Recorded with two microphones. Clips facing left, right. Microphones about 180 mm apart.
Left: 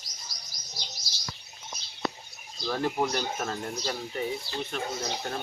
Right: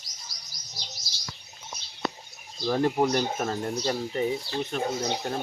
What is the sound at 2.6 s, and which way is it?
Speech, 20° right (ahead or behind).